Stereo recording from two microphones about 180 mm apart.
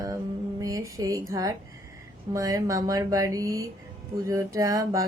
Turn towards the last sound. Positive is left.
turn(degrees=-20)  # may be behind; listen again after turning